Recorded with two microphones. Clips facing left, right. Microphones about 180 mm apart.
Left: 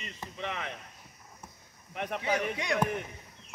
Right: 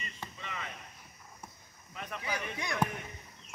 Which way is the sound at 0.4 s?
70° left (ahead or behind).